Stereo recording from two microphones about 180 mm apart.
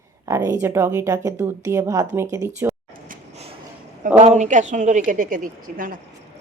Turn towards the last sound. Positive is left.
turn(degrees=-50)  # may be behind; listen again after turning